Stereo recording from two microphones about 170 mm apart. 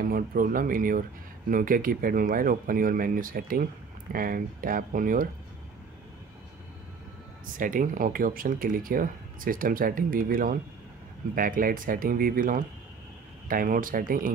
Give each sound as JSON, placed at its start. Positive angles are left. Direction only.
{"t": 0.0, "sound": "speech", "side_deg": -60}
{"t": 7.5, "sound": "speech", "side_deg": -50}